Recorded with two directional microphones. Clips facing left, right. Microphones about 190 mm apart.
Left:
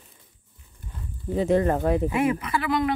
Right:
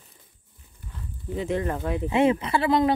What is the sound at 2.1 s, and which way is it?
Speech, 25° right (ahead or behind).